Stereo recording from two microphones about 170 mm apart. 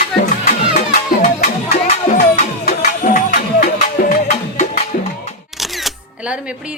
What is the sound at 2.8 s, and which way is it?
Music, 50° left (ahead or behind).